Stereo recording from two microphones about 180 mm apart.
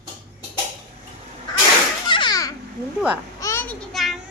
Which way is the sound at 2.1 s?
25° left (ahead or behind).